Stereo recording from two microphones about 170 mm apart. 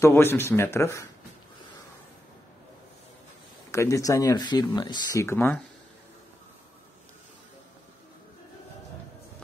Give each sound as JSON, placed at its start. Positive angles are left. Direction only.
{"t": 0.0, "sound": "speech", "side_deg": 15}
{"t": 3.7, "sound": "speech", "side_deg": 15}